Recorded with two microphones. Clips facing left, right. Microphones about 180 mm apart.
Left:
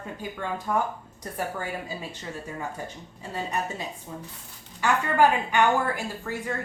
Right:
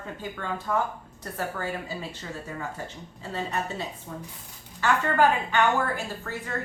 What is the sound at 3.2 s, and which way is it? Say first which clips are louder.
Speech: even; 15° left (ahead or behind).